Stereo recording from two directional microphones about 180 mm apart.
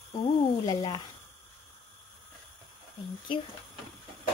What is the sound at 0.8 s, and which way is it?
Speech, 25° left (ahead or behind).